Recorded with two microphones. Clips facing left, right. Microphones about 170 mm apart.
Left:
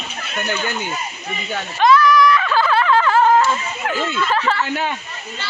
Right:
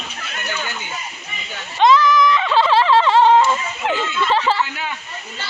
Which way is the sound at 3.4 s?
15° right (ahead or behind).